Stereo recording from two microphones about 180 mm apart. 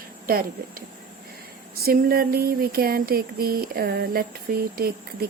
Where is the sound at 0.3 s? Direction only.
55° right (ahead or behind).